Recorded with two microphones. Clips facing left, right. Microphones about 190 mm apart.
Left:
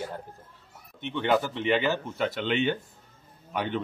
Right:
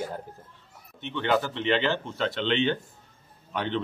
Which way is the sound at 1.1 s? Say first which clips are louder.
Even; 10° left (ahead or behind).